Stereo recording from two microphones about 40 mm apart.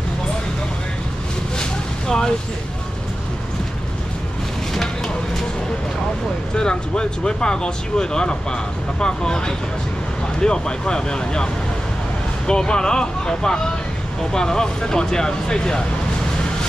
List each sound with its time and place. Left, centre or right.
1.6 s a sound: centre
4.7 s vehicle: centre
6.5 s speech: left